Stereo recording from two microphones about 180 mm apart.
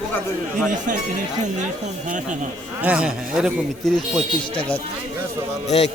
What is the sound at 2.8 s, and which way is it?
A man's voice, 5° right (ahead or behind).